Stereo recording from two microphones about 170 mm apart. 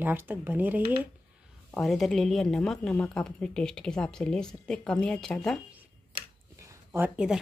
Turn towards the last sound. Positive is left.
turn(degrees=-5)  # may be behind; listen again after turning